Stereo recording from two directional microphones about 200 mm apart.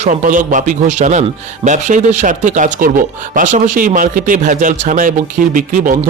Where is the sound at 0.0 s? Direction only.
40° right (ahead or behind).